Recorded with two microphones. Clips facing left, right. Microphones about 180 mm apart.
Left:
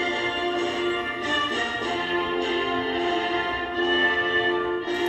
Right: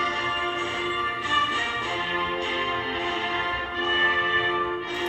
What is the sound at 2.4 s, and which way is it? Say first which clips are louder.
Music: left 5 dB; 40° left (ahead or behind).